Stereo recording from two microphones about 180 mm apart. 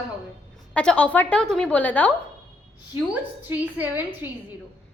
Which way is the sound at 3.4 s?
10° right (ahead or behind).